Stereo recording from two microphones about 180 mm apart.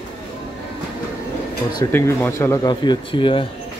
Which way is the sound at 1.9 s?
15° left (ahead or behind).